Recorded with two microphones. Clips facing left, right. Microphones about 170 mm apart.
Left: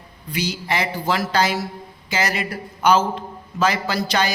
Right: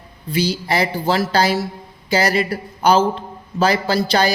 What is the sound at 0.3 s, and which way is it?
A man's voice, 30° right (ahead or behind).